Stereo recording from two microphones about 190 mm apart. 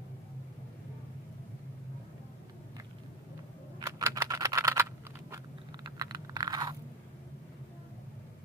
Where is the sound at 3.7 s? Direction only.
20° right (ahead or behind).